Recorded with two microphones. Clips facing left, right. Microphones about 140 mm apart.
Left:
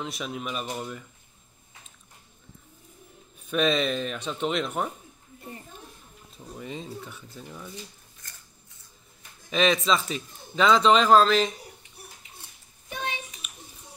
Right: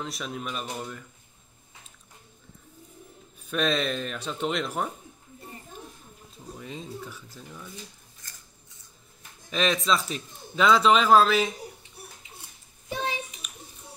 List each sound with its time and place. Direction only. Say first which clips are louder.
0.0 s a man's voice: left 1 dB; 5° left (ahead or behind)
3.4 s a man's voice: left 2 dB; centre (ahead or behind)
6.6 s a man's voice: left 2 dB; centre (ahead or behind)
9.5 s a man's voice: left 2 dB; centre (ahead or behind)
12.9 s a sound: right 3 dB; 30° right (ahead or behind)